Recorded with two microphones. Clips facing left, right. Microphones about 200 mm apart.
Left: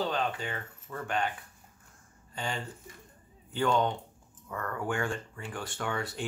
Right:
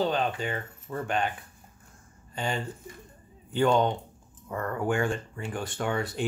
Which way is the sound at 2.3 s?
20° right (ahead or behind).